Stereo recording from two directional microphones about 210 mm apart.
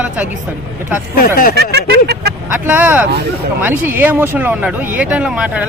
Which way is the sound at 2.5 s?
10° right (ahead or behind).